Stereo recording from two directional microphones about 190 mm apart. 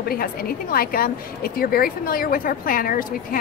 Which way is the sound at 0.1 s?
50° left (ahead or behind).